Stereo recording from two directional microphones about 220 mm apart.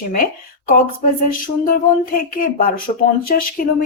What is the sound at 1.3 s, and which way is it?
Speech, 40° left (ahead or behind).